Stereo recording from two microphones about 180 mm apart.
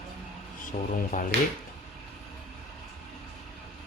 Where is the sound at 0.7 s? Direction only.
45° left (ahead or behind).